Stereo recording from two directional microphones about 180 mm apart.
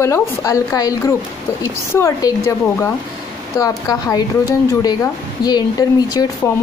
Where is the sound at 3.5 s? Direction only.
20° left (ahead or behind).